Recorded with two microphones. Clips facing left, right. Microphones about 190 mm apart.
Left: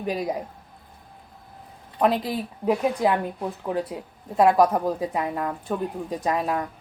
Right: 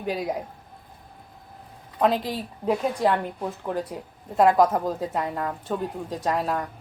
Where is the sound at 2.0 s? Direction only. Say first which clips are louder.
Left 1 dB; 10° left (ahead or behind).